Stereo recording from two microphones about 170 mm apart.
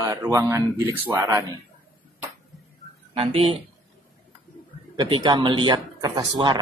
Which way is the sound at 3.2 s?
35° right (ahead or behind).